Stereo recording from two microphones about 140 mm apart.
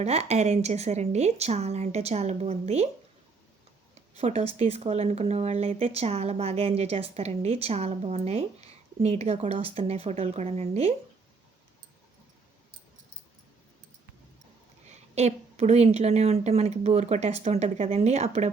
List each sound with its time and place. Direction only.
0.0 s speech: 50° right (ahead or behind)
4.2 s speech: 50° right (ahead or behind)
14.8 s speech: 50° right (ahead or behind)